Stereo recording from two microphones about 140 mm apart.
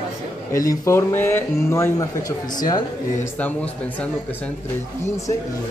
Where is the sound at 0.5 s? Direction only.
20° left (ahead or behind).